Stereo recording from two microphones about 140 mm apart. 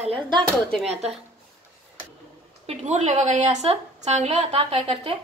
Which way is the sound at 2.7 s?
50° right (ahead or behind).